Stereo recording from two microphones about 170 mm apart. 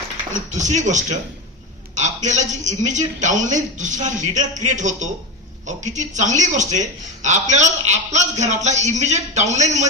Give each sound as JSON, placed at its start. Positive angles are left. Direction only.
{"t": 0.5, "sound": "speech", "side_deg": -45}